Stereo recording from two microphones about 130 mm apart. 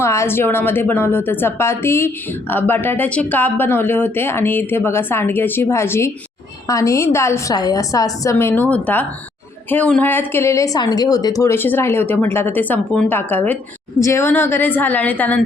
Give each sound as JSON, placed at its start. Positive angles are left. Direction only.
{"t": 0.0, "sound": "a woman's voice", "side_deg": 20}